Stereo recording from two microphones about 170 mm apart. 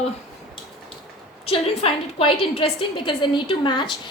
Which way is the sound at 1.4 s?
35° left (ahead or behind).